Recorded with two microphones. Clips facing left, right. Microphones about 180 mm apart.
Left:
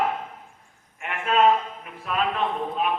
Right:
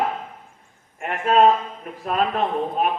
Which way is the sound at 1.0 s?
40° right (ahead or behind).